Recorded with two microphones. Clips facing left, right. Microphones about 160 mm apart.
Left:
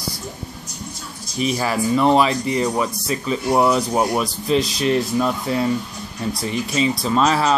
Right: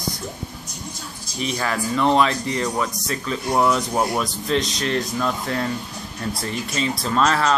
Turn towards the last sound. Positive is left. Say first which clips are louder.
# left 2 dB
turn(degrees=5)  # may be behind; listen again after turning